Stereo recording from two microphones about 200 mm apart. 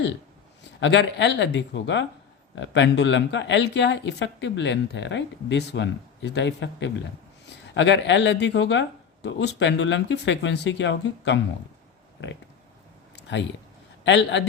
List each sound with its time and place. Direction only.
0.8 s speech: 65° left (ahead or behind)
13.1 s a sound: 65° left (ahead or behind)
14.0 s a man's voice: 65° left (ahead or behind)